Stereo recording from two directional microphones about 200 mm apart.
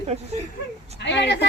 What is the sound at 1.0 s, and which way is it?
Speech, 60° left (ahead or behind).